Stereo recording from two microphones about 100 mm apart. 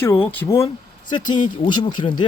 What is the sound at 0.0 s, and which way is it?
Speech, 20° left (ahead or behind).